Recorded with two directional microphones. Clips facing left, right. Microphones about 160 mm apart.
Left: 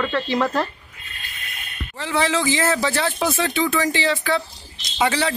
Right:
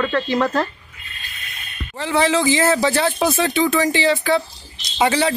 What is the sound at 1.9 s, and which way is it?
Speech, 20° right (ahead or behind).